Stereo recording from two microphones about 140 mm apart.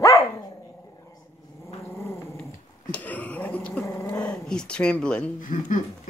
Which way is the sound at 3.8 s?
20° left (ahead or behind).